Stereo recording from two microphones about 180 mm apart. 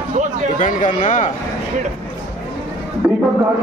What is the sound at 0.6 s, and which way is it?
Speech, 45° left (ahead or behind).